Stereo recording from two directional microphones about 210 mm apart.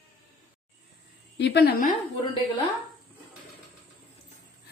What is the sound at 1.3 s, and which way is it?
Speech, 50° left (ahead or behind).